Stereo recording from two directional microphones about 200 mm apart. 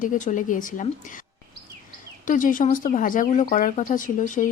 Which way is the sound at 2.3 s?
40° left (ahead or behind).